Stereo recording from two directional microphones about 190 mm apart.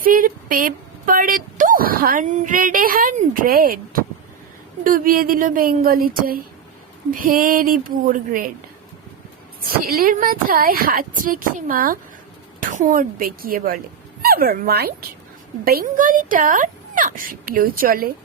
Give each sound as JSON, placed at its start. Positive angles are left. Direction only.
{"t": 0.0, "sound": "a woman's voice", "side_deg": -50}
{"t": 9.6, "sound": "speech", "side_deg": -50}